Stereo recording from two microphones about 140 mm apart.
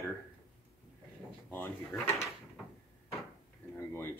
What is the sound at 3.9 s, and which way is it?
Music, 15° left (ahead or behind).